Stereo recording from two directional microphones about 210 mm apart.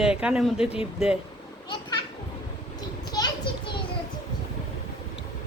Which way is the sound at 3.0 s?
20° left (ahead or behind).